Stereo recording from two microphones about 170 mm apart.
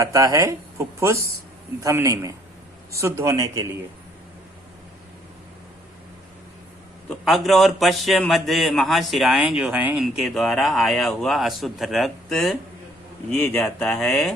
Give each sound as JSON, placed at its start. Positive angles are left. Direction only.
{"t": 0.0, "sound": "a man's voice", "side_deg": -20}
{"t": 7.1, "sound": "a man's voice", "side_deg": 0}
{"t": 13.8, "sound": "a man's voice", "side_deg": 0}